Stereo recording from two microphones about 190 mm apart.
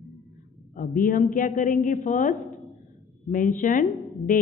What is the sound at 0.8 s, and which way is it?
A woman's voice, 45° left (ahead or behind).